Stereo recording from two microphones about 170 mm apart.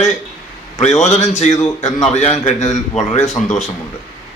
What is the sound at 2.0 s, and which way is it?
Speech, 40° left (ahead or behind).